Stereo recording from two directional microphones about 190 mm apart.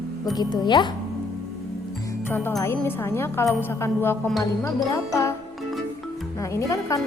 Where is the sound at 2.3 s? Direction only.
10° left (ahead or behind).